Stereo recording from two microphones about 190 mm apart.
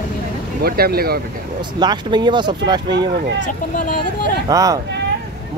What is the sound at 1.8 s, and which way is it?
Speech, 25° right (ahead or behind).